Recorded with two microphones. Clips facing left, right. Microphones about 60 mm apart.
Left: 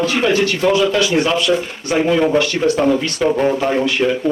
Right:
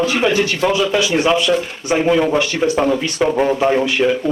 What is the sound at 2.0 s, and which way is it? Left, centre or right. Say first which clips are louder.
A man's voice: left 1 dB; centre.